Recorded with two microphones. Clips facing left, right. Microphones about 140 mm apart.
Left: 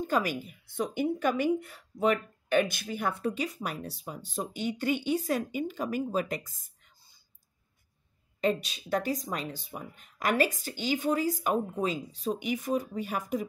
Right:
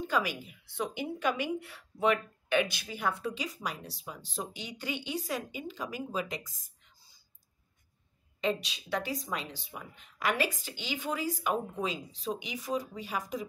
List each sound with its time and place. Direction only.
0.0 s a woman's voice: 45° left (ahead or behind)
8.4 s a woman's voice: 45° left (ahead or behind)